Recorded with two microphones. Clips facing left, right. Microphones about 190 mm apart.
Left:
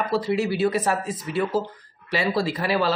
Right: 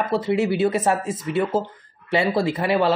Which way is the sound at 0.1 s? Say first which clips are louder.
Right 3 dB; 20° right (ahead or behind).